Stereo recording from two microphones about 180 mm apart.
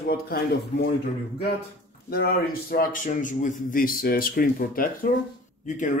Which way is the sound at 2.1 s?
55° left (ahead or behind).